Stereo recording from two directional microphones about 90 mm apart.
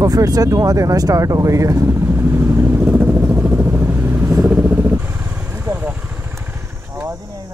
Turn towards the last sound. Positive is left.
turn(degrees=-20)  # may be behind; listen again after turning